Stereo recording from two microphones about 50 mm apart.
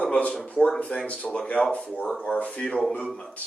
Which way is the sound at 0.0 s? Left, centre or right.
Left.